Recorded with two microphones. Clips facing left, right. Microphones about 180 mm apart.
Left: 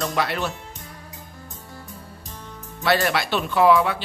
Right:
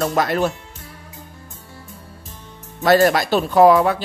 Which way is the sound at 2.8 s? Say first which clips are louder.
Right 7 dB; 40° right (ahead or behind).